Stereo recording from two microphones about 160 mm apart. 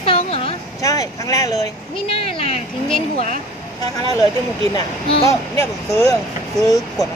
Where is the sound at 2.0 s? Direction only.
35° left (ahead or behind).